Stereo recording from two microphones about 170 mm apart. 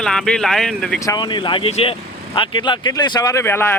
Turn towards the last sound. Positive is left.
turn(degrees=15)  # may be behind; listen again after turning